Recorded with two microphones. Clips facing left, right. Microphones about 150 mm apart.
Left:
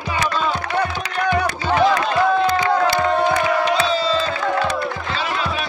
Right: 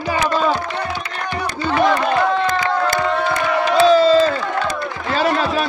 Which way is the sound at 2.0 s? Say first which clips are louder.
Even; 50° right (ahead or behind).